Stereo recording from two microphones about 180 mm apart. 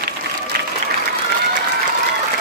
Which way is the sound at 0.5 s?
55° right (ahead or behind).